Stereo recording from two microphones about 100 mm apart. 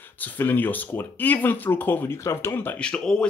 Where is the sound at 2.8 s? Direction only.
10° left (ahead or behind).